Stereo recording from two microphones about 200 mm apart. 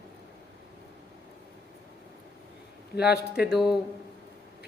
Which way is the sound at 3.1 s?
55° left (ahead or behind).